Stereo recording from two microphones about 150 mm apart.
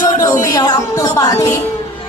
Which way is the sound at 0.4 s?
25° left (ahead or behind).